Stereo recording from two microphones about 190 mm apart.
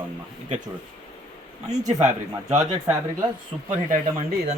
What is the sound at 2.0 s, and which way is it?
Speech, 40° right (ahead or behind).